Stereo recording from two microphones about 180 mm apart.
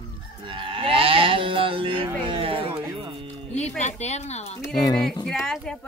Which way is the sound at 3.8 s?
40° left (ahead or behind).